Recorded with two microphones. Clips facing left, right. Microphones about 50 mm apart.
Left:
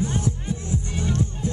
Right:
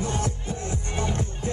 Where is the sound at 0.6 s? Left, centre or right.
Right.